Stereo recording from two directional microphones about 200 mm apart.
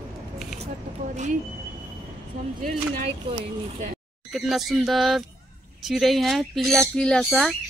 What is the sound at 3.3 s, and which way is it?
Speech, 25° right (ahead or behind).